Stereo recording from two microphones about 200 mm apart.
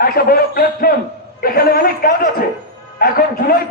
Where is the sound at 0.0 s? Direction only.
50° left (ahead or behind).